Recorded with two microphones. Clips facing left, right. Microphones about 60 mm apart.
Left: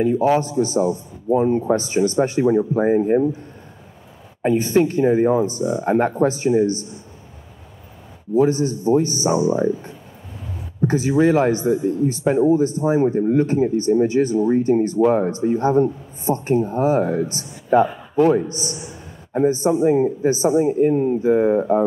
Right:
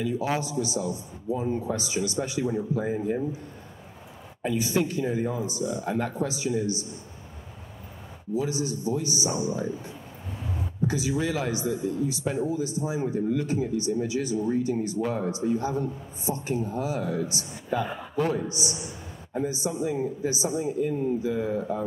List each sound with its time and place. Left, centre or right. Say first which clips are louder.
0.0 s speech: left 10 dB; left
4.4 s speech: left 9 dB; left
8.4 s speech: left 12 dB; left